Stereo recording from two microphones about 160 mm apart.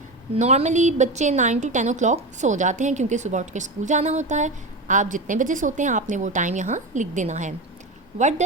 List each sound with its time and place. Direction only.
0.3 s a woman's voice: 45° right (ahead or behind)